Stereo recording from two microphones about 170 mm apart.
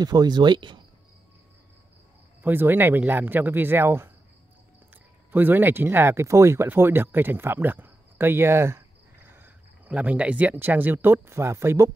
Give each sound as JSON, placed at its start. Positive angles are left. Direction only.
{"t": 0.0, "sound": "speech", "side_deg": -25}
{"t": 2.4, "sound": "speech", "side_deg": -10}
{"t": 5.3, "sound": "speech", "side_deg": -10}